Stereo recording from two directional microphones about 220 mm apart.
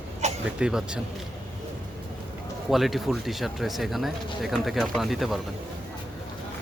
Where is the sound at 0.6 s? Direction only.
5° right (ahead or behind).